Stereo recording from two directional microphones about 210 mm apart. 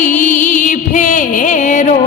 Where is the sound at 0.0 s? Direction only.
35° left (ahead or behind).